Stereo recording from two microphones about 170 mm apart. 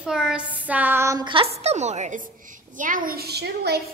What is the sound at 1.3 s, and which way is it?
A woman's voice, 35° right (ahead or behind).